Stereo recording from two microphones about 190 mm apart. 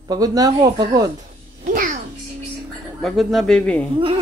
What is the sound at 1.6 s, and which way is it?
Babbling, 45° right (ahead or behind).